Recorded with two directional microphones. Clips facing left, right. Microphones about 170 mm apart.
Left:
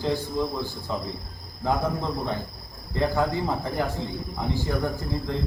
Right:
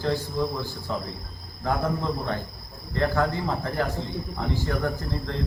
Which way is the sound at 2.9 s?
15° left (ahead or behind).